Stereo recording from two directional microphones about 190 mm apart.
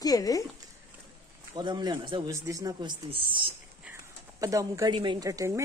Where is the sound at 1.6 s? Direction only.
25° right (ahead or behind).